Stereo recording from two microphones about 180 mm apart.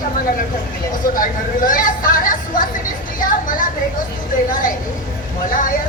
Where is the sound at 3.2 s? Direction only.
50° left (ahead or behind).